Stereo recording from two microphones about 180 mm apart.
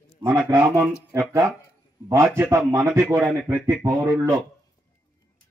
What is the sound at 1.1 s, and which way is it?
A man's voice, 15° right (ahead or behind).